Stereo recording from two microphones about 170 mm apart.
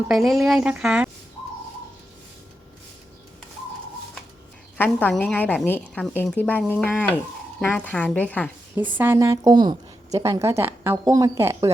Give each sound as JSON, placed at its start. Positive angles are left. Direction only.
{"t": 0.1, "sound": "a woman's voice", "side_deg": 0}
{"t": 4.8, "sound": "a woman's voice", "side_deg": 10}
{"t": 8.7, "sound": "a woman's voice", "side_deg": -10}